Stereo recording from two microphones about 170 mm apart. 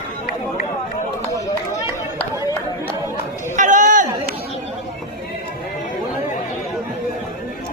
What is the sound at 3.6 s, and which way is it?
Chatter, 50° right (ahead or behind).